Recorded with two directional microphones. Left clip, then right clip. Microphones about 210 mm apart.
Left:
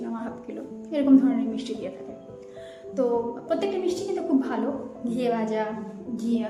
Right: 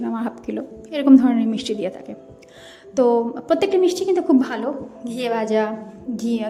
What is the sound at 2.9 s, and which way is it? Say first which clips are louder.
A woman's voice: right 8 dB; 45° right (ahead or behind).